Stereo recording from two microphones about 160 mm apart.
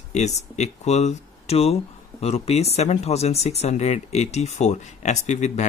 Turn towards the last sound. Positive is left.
turn(degrees=45)  # may be behind; listen again after turning